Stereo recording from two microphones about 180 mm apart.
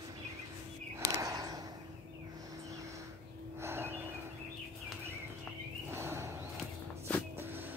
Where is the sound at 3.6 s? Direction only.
15° right (ahead or behind).